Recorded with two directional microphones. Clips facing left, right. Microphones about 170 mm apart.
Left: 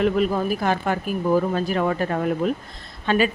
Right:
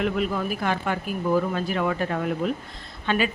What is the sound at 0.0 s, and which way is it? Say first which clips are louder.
Speech: left 5 dB; 40° left (ahead or behind).